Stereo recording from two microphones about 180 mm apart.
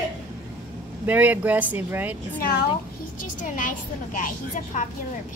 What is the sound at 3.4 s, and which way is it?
Speech, 45° left (ahead or behind).